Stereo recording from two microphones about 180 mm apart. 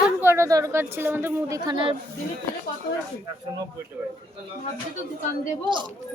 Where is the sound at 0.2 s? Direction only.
15° right (ahead or behind).